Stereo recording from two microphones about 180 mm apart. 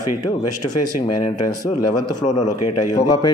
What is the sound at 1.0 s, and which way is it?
A man's voice, 20° left (ahead or behind).